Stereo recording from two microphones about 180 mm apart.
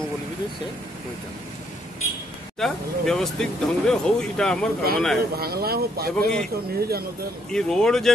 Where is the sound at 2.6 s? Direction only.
Centre (ahead or behind).